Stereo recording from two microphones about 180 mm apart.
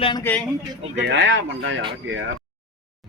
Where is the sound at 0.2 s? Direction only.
10° left (ahead or behind).